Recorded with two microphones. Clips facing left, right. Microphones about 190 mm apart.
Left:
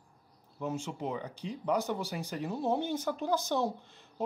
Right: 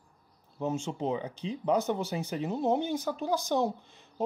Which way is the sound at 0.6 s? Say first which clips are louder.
Right 4 dB; 25° right (ahead or behind).